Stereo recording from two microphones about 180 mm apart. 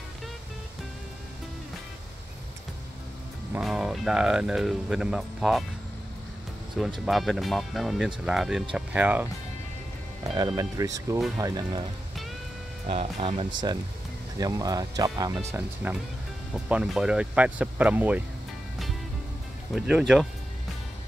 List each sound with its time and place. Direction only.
3.5 s speech: centre (ahead or behind)
6.8 s speech: centre (ahead or behind)
10.3 s speech: 20° right (ahead or behind)
12.8 s speech: 35° right (ahead or behind)
14.4 s speech: 20° right (ahead or behind)
19.7 s speech: centre (ahead or behind)